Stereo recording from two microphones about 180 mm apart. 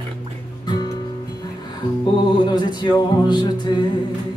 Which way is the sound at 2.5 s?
25° left (ahead or behind).